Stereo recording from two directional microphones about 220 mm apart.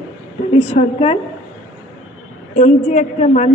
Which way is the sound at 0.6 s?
25° left (ahead or behind).